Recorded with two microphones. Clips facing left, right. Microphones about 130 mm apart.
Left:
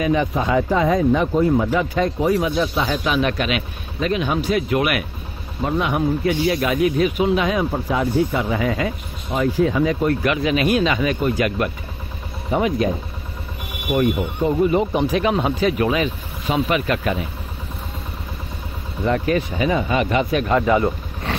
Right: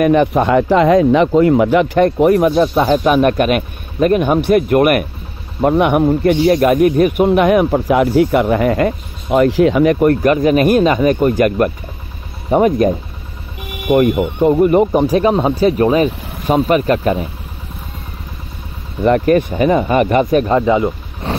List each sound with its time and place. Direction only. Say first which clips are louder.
0.0 s speech: right 8 dB; 60° right (ahead or behind)
5.6 s speech: right 9 dB; 60° right (ahead or behind)
10.2 s speech: right 8 dB; 45° right (ahead or behind)
13.8 s speech: right 7 dB; 70° right (ahead or behind)
14.9 s speech: right 6 dB; 40° right (ahead or behind)
19.0 s speech: right 8 dB; 55° right (ahead or behind)
20.5 s speech: right 4 dB; 20° right (ahead or behind)